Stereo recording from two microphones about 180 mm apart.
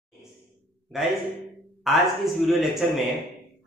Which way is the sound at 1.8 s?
Centre (ahead or behind).